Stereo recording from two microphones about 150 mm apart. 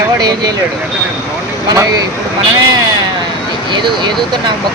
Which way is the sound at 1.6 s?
25° right (ahead or behind).